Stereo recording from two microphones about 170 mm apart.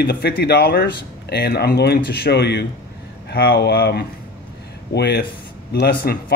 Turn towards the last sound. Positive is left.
turn(degrees=65)  # may be behind; listen again after turning